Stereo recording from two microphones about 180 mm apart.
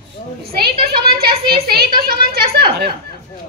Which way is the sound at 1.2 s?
60° right (ahead or behind).